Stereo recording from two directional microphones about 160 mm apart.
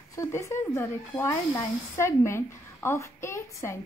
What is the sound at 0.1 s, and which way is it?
A woman's voice, 20° left (ahead or behind).